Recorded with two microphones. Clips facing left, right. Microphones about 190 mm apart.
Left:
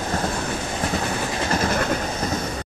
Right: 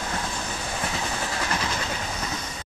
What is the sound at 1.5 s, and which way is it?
Vehicle, 50° left (ahead or behind).